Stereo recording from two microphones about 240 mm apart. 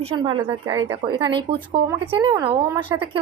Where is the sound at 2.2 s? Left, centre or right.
Centre.